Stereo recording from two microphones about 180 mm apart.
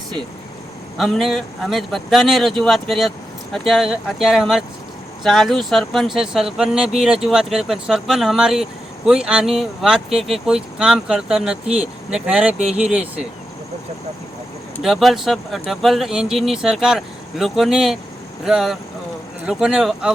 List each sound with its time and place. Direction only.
0.9 s speech: centre (ahead or behind)
14.8 s speech: centre (ahead or behind)